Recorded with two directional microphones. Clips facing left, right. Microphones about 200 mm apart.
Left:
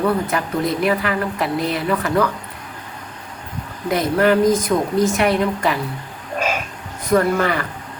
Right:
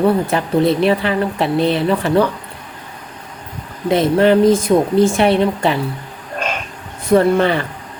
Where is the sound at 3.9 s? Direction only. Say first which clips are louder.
Right 4 dB; 25° right (ahead or behind).